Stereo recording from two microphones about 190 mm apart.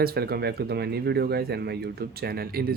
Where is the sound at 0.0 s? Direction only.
55° right (ahead or behind).